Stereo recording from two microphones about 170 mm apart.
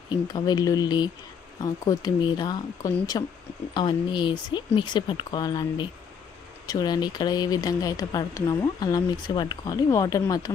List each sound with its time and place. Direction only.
0.1 s speech: 25° left (ahead or behind)